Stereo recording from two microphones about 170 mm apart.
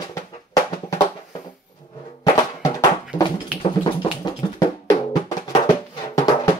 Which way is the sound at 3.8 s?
25° left (ahead or behind).